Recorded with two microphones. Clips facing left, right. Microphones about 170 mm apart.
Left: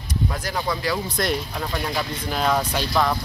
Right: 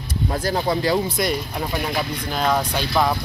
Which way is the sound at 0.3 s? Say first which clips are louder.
Right 9 dB; 30° right (ahead or behind).